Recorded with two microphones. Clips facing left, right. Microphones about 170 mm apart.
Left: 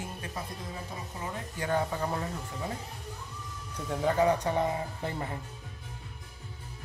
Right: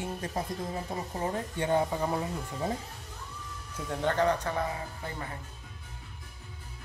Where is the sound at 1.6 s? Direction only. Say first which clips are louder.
Right 2 dB; 20° right (ahead or behind).